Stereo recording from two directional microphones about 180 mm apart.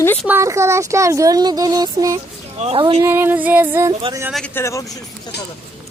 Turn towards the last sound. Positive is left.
turn(degrees=70)  # may be behind; listen again after turning